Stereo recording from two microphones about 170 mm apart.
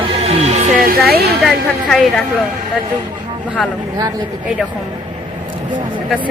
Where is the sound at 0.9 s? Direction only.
65° right (ahead or behind).